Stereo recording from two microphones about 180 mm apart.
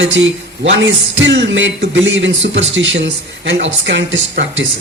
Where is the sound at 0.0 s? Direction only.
90° right.